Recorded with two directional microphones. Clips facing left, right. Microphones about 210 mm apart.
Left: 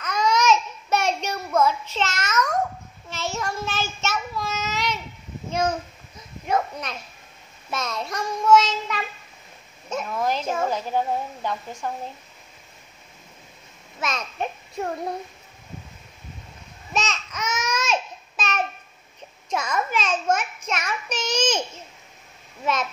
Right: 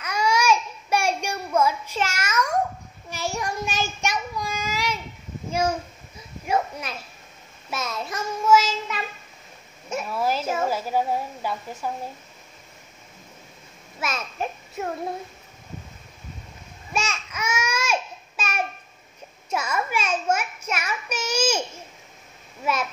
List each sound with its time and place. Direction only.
0.0 s child singing: 10° right (ahead or behind)
5.5 s a sound: 10° right (ahead or behind)
7.7 s child singing: 5° right (ahead or behind)
9.8 s a sound: 10° right (ahead or behind)
14.0 s a child's voice: 5° right (ahead or behind)
16.9 s babbling: 10° right (ahead or behind)
19.5 s child singing: 10° right (ahead or behind)